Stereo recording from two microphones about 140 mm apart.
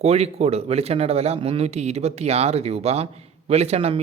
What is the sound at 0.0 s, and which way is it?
Speech, 50° right (ahead or behind).